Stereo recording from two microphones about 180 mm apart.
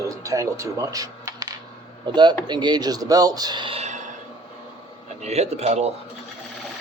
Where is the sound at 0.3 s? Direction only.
15° right (ahead or behind); by 4.0 s 35° right (ahead or behind).